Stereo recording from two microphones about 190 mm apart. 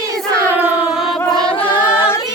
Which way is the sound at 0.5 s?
10° right (ahead or behind).